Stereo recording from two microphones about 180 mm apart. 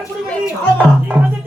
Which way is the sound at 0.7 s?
10° right (ahead or behind).